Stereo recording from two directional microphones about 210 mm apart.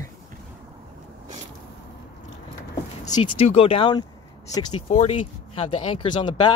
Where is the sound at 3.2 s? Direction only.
30° left (ahead or behind).